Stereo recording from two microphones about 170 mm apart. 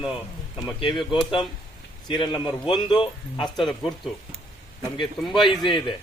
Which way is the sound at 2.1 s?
30° left (ahead or behind).